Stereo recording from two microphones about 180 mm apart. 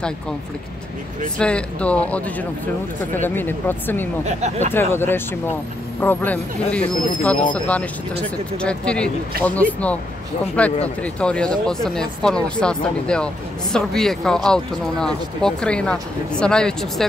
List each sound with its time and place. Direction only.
1.4 s speech: 5° left (ahead or behind)
4.3 s speech: 40° right (ahead or behind)
4.7 s speech: 10° left (ahead or behind)